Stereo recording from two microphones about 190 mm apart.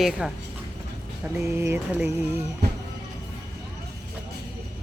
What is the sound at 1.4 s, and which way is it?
Music, 15° right (ahead or behind).